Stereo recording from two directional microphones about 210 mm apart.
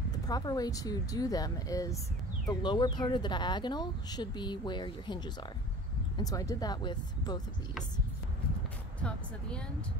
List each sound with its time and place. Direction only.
0.1 s speech: 20° left (ahead or behind)
9.0 s speech: 5° left (ahead or behind)